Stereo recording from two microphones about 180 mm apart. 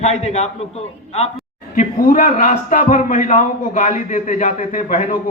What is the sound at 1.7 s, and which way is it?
A man's voice, 50° left (ahead or behind).